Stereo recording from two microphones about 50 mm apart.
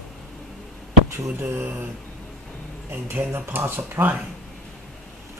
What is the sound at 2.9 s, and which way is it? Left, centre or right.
Speech, right.